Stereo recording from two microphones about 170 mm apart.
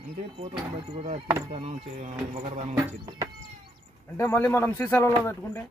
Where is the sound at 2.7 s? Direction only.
20° right (ahead or behind).